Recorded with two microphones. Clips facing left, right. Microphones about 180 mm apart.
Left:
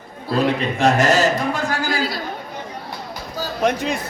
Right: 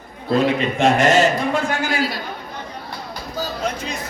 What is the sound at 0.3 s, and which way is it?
Speech, 40° left (ahead or behind).